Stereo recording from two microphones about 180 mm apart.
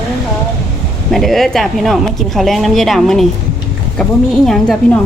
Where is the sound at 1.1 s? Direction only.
Centre (ahead or behind).